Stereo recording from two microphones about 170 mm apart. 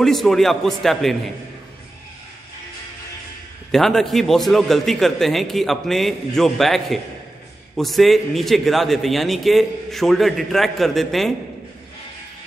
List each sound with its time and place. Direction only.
0.0 s a man's voice: centre (ahead or behind)
3.7 s a man's voice: centre (ahead or behind)